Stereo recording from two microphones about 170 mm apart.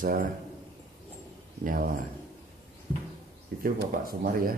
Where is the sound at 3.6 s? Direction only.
60° right (ahead or behind).